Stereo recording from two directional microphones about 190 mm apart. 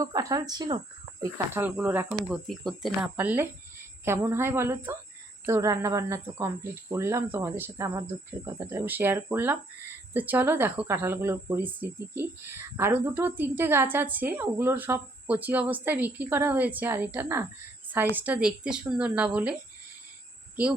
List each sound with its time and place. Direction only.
0.0 s speech: 15° right (ahead or behind)
1.2 s speech: 10° right (ahead or behind)
17.8 s a sound: 10° right (ahead or behind)
18.2 s speech: 5° right (ahead or behind)